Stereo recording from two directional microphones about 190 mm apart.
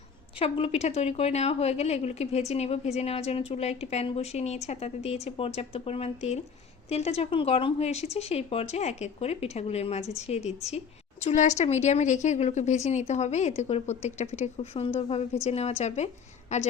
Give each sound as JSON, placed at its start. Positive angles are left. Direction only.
{"t": 0.3, "sound": "a woman's voice", "side_deg": 30}